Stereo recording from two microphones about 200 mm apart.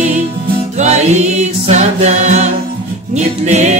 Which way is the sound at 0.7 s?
35° right (ahead or behind).